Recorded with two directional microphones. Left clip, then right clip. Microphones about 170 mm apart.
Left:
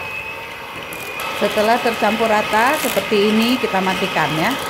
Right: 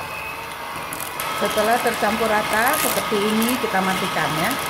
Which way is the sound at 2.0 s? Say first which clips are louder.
Left 3 dB; 40° left (ahead or behind).